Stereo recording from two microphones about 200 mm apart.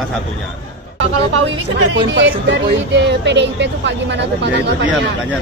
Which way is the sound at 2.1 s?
60° right (ahead or behind).